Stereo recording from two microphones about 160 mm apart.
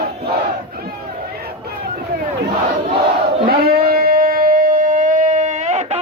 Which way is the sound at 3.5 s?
70° right (ahead or behind).